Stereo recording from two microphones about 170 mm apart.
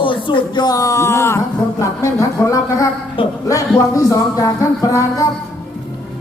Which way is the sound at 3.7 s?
20° left (ahead or behind).